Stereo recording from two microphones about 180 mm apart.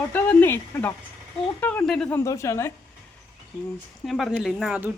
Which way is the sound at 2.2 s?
15° left (ahead or behind).